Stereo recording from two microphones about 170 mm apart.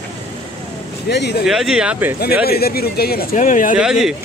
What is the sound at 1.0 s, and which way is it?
Speech, 75° left (ahead or behind).